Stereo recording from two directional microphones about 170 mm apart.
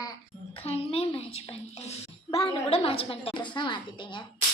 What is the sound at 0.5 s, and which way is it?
A child's voice, 35° left (ahead or behind).